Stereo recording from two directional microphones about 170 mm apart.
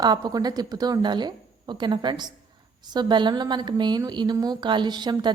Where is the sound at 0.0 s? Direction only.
25° right (ahead or behind).